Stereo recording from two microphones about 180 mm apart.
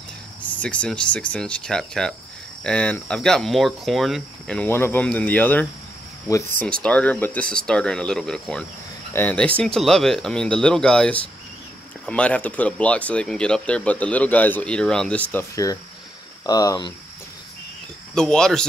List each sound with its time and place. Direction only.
0.6 s speech: 5° left (ahead or behind)
6.8 s speech: 5° left (ahead or behind)
15.5 s speech: 20° left (ahead or behind)
18.1 s speech: 5° left (ahead or behind)